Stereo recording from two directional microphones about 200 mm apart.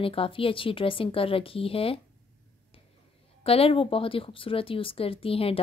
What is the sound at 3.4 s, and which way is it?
Speech, 30° left (ahead or behind).